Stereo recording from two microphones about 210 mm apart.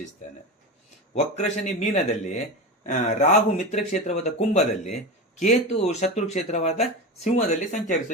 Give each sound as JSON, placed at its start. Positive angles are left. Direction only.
{"t": 1.1, "sound": "speech", "side_deg": 30}